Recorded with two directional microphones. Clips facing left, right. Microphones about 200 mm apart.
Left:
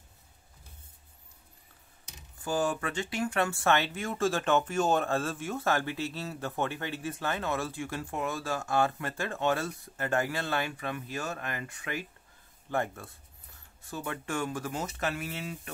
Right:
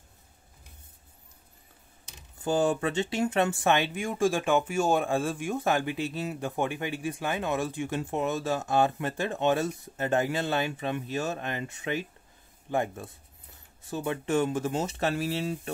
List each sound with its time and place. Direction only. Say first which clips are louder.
2.4 s speech: right 5 dB; 25° right (ahead or behind)